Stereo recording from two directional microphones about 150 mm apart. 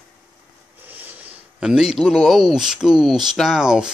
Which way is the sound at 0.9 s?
10° right (ahead or behind).